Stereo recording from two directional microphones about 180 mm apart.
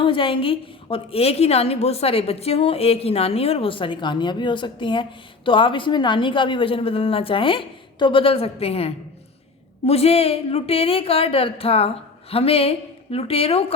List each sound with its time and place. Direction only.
0.0 s a woman's voice: 30° left (ahead or behind)